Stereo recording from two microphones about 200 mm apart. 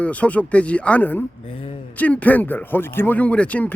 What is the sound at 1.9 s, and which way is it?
Speech, 5° left (ahead or behind).